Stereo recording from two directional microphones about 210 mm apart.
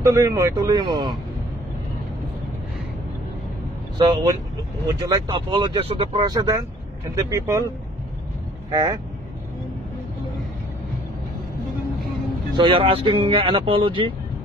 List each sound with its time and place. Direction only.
0.0 s speech: 15° right (ahead or behind)
4.0 s speech: 20° right (ahead or behind)
12.5 s speech: 25° right (ahead or behind)